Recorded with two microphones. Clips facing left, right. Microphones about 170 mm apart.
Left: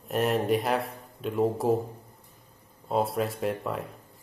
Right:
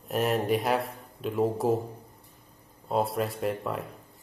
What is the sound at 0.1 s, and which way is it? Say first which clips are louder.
Speech: left 1 dB; centre (ahead or behind).